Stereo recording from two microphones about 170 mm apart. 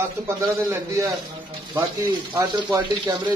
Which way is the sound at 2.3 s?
20° right (ahead or behind).